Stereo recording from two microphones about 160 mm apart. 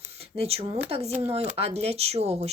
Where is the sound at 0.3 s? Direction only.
40° right (ahead or behind).